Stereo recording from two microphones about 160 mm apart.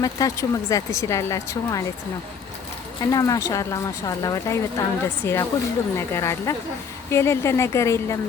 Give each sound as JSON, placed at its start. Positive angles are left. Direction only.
{"t": 0.0, "sound": "speech", "side_deg": 20}
{"t": 3.0, "sound": "speech", "side_deg": 20}